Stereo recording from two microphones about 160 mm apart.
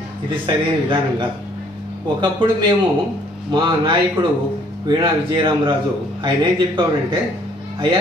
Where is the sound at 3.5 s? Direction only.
30° right (ahead or behind).